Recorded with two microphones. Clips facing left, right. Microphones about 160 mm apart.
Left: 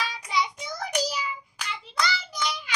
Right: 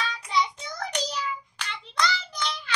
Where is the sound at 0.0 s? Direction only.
10° left (ahead or behind).